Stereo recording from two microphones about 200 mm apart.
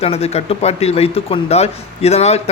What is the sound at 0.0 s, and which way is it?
Speech, 30° left (ahead or behind).